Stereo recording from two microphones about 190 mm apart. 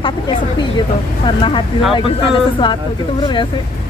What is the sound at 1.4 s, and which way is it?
Speech, 25° left (ahead or behind).